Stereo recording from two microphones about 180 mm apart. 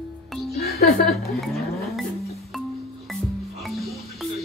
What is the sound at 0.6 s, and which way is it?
Music, 55° left (ahead or behind).